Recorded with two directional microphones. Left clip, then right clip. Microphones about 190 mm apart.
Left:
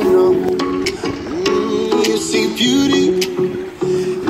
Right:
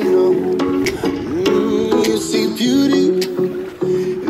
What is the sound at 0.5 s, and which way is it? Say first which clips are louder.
Music: right 1 dB; 20° right (ahead or behind).